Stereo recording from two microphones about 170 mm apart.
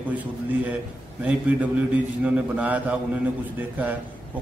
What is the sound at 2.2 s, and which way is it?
Mantra, 10° right (ahead or behind).